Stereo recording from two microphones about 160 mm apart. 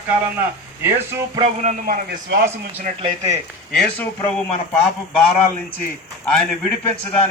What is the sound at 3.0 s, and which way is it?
Speech, 20° right (ahead or behind).